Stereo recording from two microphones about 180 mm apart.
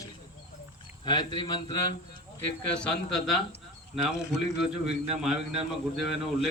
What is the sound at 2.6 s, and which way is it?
Speech, 5° left (ahead or behind).